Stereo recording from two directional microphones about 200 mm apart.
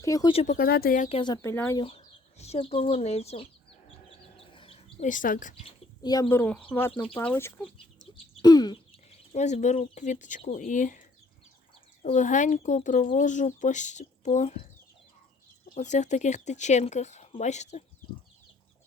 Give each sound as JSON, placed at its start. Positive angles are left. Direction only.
{"t": 0.0, "sound": "speech", "side_deg": 20}
{"t": 0.4, "sound": "speech", "side_deg": 45}
{"t": 1.0, "sound": "speech", "side_deg": 25}
{"t": 1.8, "sound": "speech", "side_deg": 30}
{"t": 4.5, "sound": "bird", "side_deg": 25}
{"t": 5.0, "sound": "speech", "side_deg": 40}
{"t": 6.0, "sound": "speech", "side_deg": 20}
{"t": 12.0, "sound": "speech", "side_deg": 40}
{"t": 15.7, "sound": "speech", "side_deg": 35}